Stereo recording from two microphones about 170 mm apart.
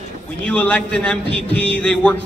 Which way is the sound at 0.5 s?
10° left (ahead or behind).